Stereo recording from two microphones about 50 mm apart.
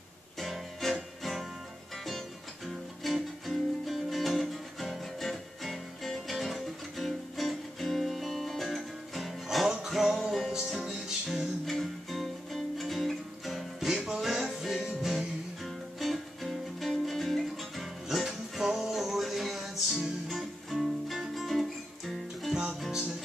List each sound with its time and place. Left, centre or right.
0.4 s music: centre
11.6 s music: centre
13.9 s music: centre
14.2 s music: centre
18.9 s music: centre
22.5 s music: centre